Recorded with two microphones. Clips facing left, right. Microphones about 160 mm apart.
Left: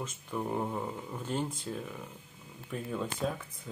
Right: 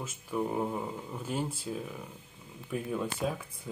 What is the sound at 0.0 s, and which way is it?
Speech, 5° right (ahead or behind).